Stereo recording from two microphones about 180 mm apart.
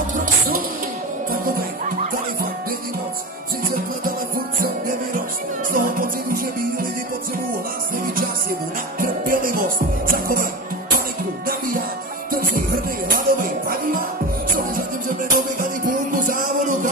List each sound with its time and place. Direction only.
0.1 s music: 45° right (ahead or behind)
5.7 s music: 50° right (ahead or behind)
9.0 s music: 50° right (ahead or behind)